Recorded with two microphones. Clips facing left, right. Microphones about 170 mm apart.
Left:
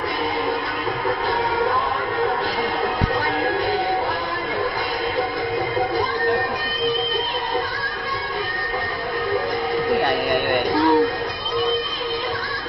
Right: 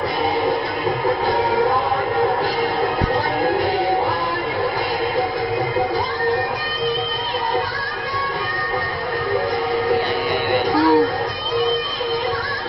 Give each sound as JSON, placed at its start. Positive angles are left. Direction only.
{"t": 9.9, "sound": "music", "side_deg": 55}
{"t": 10.8, "sound": "music", "side_deg": 0}